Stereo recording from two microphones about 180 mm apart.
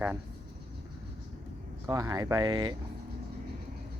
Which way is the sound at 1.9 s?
20° right (ahead or behind).